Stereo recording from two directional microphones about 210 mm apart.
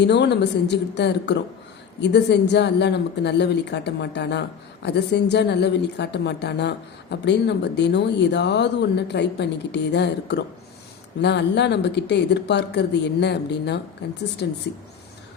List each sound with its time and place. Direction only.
0.0 s speech: 55° left (ahead or behind)